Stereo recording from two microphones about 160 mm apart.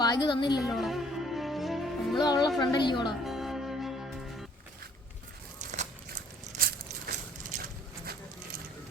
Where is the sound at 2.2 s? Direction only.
25° left (ahead or behind).